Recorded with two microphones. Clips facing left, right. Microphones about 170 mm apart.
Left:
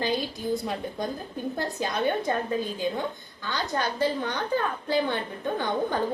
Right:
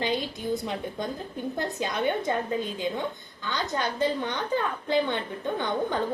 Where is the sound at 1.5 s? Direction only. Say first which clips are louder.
Even; 20° right (ahead or behind).